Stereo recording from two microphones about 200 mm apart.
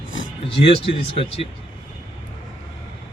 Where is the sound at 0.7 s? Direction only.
30° left (ahead or behind).